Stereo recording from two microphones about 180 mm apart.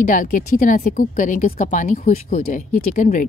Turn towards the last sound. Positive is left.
turn(degrees=45)  # may be behind; listen again after turning